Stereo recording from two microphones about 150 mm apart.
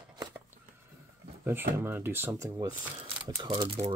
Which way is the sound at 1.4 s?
15° right (ahead or behind).